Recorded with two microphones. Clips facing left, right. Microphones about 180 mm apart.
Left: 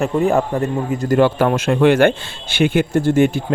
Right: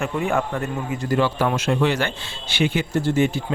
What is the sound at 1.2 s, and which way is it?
A man's voice, 55° left (ahead or behind).